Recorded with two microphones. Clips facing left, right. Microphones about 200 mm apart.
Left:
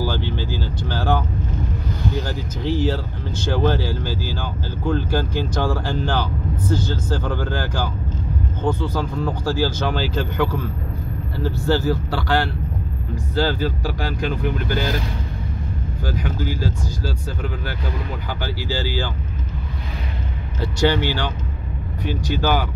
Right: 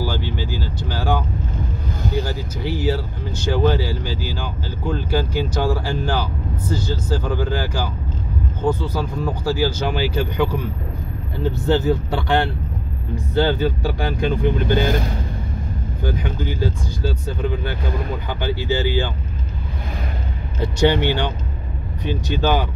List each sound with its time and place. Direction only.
0.0 s speech: 10° right (ahead or behind)
2.2 s speech: 10° right (ahead or behind)
16.0 s speech: 25° right (ahead or behind)
20.6 s speech: 20° right (ahead or behind)